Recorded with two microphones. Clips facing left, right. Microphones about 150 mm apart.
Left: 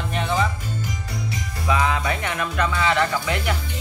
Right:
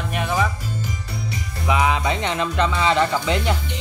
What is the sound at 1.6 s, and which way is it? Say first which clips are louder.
Speech: right 2 dB; 20° right (ahead or behind).